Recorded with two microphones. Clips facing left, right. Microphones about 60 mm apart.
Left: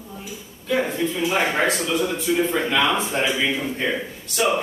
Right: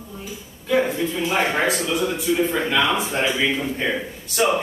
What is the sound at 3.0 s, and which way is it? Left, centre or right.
Speech, right.